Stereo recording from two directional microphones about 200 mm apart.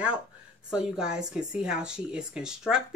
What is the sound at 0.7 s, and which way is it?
Speech, 5° right (ahead or behind).